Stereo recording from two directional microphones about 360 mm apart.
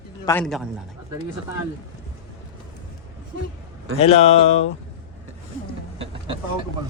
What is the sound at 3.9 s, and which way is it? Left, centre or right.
Speech, centre.